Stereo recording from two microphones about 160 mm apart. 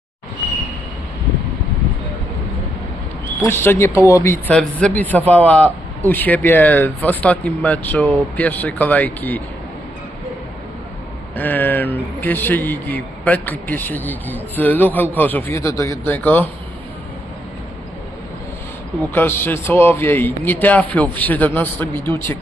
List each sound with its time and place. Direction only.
3.5 s a man's voice: 15° left (ahead or behind)
11.3 s a man's voice: 10° left (ahead or behind)
19.1 s a man's voice: 15° left (ahead or behind)